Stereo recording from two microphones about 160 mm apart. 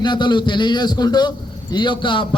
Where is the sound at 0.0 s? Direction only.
30° left (ahead or behind).